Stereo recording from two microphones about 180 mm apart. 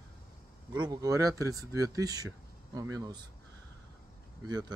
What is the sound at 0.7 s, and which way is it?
Speech, 25° right (ahead or behind).